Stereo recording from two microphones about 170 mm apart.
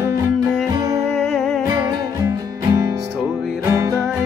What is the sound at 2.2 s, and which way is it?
Music, 15° right (ahead or behind).